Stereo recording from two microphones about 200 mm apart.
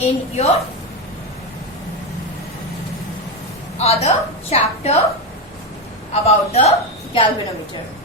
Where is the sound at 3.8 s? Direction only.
30° left (ahead or behind).